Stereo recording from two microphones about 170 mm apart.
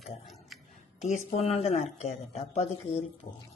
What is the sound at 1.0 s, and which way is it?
A woman's voice, 45° left (ahead or behind).